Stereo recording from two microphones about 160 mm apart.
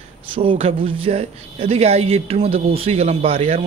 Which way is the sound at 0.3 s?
35° right (ahead or behind).